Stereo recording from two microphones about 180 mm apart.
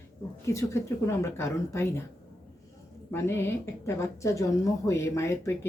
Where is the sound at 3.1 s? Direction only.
10° left (ahead or behind).